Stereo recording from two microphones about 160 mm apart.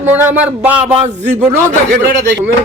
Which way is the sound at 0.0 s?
10° right (ahead or behind).